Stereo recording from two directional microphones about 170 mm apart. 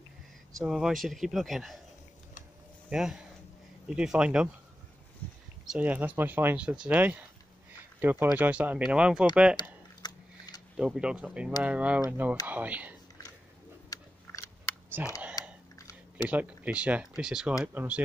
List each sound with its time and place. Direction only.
0.6 s speech: centre (ahead or behind)
2.9 s speech: 5° right (ahead or behind)
5.7 s speech: 10° right (ahead or behind)
9.6 s a sound: 25° left (ahead or behind)
10.8 s speech: 5° right (ahead or behind)
13.9 s biting: 20° left (ahead or behind)
15.0 s speech: 10° right (ahead or behind)
15.4 s chewing: 20° left (ahead or behind)
16.3 s speech: 10° right (ahead or behind)